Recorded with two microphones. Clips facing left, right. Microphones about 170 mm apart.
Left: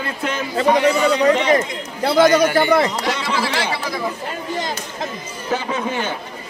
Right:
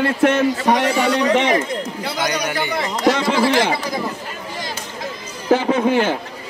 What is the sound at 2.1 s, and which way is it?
Speech, 50° left (ahead or behind).